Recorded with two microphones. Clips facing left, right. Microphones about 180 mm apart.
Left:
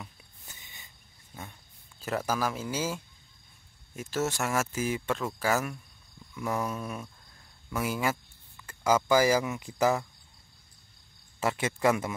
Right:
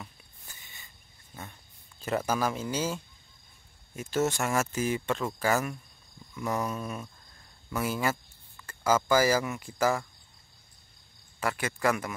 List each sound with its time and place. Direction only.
0.5 s cricket: 20° left (ahead or behind)
1.3 s speech: 5° left (ahead or behind)
6.3 s a sound: 5° left (ahead or behind)
7.7 s speech: 10° left (ahead or behind)
11.3 s speech: 25° left (ahead or behind)